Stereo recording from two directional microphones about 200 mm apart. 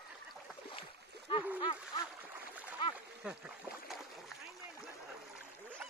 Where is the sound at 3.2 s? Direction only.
5° right (ahead or behind).